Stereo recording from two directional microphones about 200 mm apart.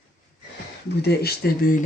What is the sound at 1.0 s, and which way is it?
Speech, 50° left (ahead or behind).